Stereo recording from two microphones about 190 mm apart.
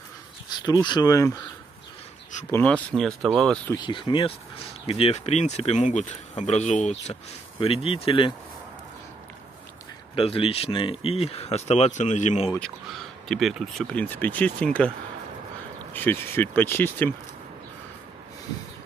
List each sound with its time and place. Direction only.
0.5 s speech: 20° left (ahead or behind)
2.5 s speech: 5° left (ahead or behind)
3.7 s speech: 25° left (ahead or behind)
10.1 s speech: 30° left (ahead or behind)
12.4 s speech: 5° left (ahead or behind)
15.9 s speech: 10° left (ahead or behind)